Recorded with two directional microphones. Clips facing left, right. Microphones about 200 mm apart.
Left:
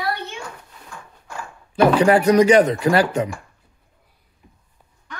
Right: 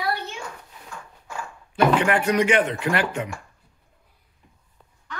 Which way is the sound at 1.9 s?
35° left (ahead or behind).